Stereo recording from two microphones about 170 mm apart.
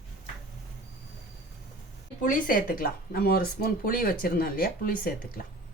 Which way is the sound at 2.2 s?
50° left (ahead or behind).